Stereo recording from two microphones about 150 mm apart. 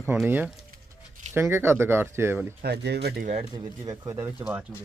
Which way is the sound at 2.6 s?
90° right.